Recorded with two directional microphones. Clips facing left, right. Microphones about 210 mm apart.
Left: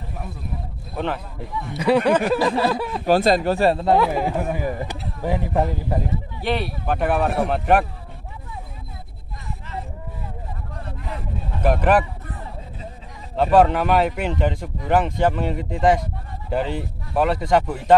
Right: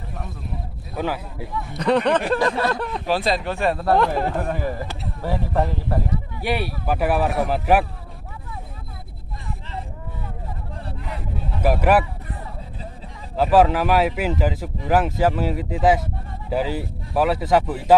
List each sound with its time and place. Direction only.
0.9 s speech: 5° right (ahead or behind)
1.8 s speech: 5° left (ahead or behind)
3.1 s speech: 45° left (ahead or behind)
4.0 s speech: 5° left (ahead or behind)
6.4 s speech: 5° right (ahead or behind)
11.6 s speech: 5° right (ahead or behind)
13.4 s speech: centre (ahead or behind)